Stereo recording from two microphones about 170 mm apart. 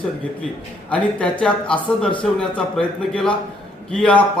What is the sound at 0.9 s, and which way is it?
A man's voice, 5° left (ahead or behind).